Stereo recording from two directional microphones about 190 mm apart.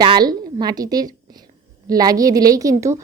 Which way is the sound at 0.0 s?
20° right (ahead or behind).